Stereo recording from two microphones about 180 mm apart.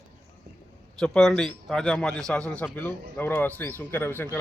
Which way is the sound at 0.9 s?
5° left (ahead or behind).